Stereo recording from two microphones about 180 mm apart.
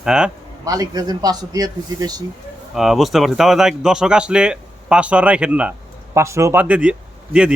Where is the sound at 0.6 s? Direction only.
20° right (ahead or behind).